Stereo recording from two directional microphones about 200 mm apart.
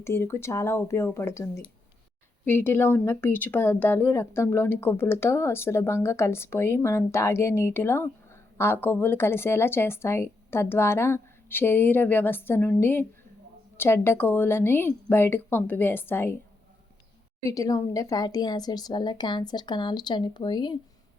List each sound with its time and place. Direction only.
0.0 s speech: 15° left (ahead or behind)
17.4 s speech: 15° left (ahead or behind)